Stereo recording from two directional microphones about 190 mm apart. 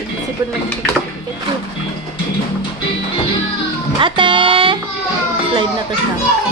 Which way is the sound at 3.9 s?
25° right (ahead or behind).